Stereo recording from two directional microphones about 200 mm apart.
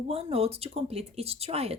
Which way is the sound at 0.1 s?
30° right (ahead or behind).